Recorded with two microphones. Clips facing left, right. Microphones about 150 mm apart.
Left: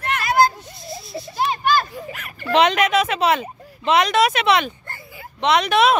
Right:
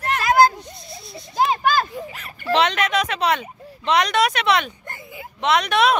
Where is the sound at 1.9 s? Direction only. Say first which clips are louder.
Even; 30° right (ahead or behind).